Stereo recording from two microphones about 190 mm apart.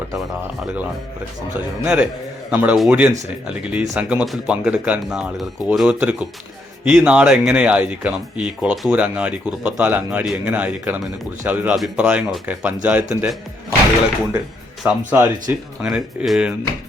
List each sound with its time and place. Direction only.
0.6 s speech: 5° right (ahead or behind)
14.8 s speech: 10° right (ahead or behind)